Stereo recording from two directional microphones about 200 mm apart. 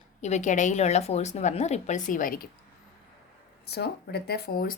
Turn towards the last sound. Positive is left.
turn(degrees=45)  # may be behind; listen again after turning